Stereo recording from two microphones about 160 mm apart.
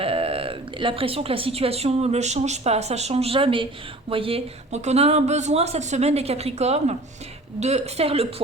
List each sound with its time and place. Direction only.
0.0 s a woman's voice: 35° right (ahead or behind)